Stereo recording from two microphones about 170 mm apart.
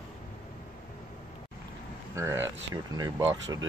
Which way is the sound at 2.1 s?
15° right (ahead or behind).